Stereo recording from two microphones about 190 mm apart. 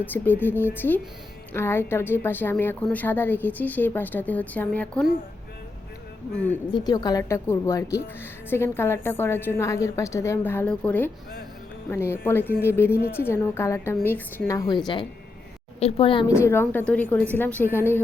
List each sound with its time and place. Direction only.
0.0 s a woman's voice: 10° left (ahead or behind)
6.3 s a woman's voice: 10° left (ahead or behind)
6.7 s a woman's voice: 20° left (ahead or behind)
15.8 s a woman's voice: 30° left (ahead or behind)
16.4 s a woman's voice: 10° left (ahead or behind)